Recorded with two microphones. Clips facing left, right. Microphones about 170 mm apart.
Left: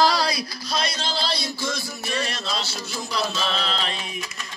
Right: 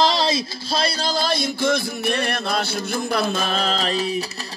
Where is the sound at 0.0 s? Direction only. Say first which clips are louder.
Right 2 dB; 25° right (ahead or behind).